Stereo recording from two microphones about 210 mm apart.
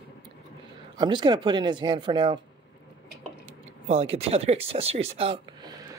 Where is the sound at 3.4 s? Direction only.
30° right (ahead or behind).